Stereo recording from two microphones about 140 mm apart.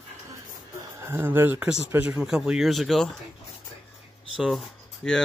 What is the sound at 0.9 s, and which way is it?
Speech, 15° right (ahead or behind).